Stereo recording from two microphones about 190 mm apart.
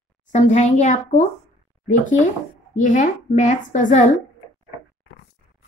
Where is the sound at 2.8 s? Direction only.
40° left (ahead or behind).